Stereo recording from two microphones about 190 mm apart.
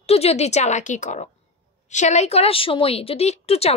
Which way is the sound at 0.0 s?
30° left (ahead or behind).